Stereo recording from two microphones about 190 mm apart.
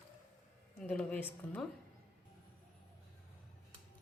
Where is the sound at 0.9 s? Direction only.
10° left (ahead or behind).